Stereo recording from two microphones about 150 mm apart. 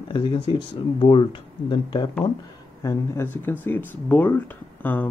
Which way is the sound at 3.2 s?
10° left (ahead or behind).